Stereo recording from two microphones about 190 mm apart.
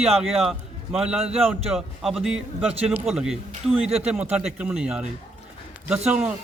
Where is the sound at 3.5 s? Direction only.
30° right (ahead or behind).